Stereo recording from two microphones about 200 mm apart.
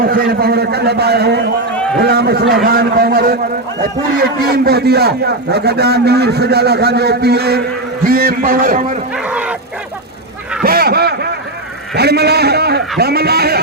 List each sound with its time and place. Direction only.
0.0 s a man's voice: 50° right (ahead or behind)
9.1 s bow-wow: 5° right (ahead or behind)
10.6 s a sound: 50° right (ahead or behind)
11.9 s a man's voice: 55° right (ahead or behind)